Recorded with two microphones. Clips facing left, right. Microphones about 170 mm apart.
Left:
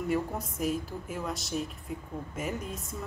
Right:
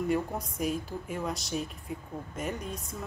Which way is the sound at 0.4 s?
Centre (ahead or behind).